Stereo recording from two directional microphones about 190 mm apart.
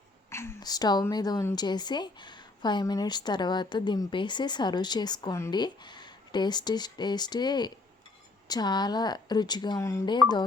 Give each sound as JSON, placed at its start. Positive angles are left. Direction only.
{"t": 0.3, "sound": "a woman's voice", "side_deg": 15}